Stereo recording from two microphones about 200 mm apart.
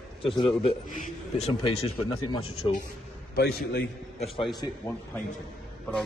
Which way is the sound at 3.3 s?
50° left (ahead or behind).